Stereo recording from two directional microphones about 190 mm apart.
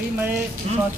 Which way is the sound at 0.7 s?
35° right (ahead or behind).